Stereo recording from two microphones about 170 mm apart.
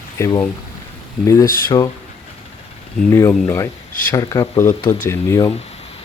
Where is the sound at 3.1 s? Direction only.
15° left (ahead or behind).